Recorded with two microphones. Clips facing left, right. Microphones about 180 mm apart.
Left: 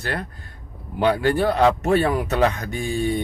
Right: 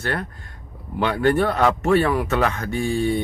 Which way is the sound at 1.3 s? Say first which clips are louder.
Left 1 dB; 35° left (ahead or behind).